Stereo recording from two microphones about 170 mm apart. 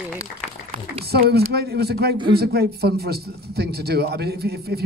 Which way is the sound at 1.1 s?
70° right (ahead or behind).